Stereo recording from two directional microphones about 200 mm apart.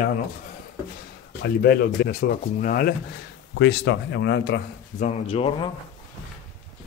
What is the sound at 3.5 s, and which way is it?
Speech, 60° left (ahead or behind).